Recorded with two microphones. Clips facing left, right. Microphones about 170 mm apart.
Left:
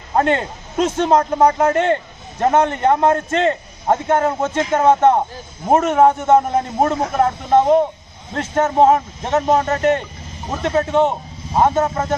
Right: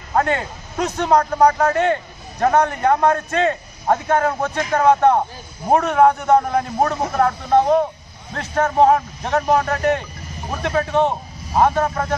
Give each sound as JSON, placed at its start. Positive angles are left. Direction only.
{"t": 0.1, "sound": "a man's voice", "side_deg": 25}